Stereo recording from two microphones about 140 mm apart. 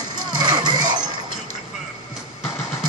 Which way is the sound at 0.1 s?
30° right (ahead or behind).